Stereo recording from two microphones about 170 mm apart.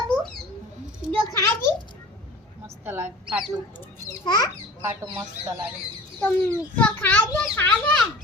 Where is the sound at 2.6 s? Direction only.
15° right (ahead or behind).